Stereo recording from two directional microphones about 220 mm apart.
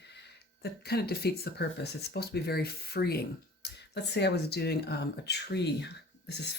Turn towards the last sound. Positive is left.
turn(degrees=50)  # may be behind; listen again after turning